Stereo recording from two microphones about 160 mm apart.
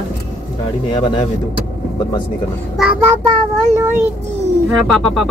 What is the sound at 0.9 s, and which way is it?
Speech, 30° left (ahead or behind).